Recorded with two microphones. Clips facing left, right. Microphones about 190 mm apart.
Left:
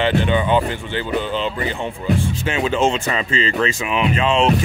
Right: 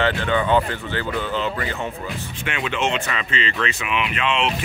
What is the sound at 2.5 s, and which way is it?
Speech, 35° left (ahead or behind).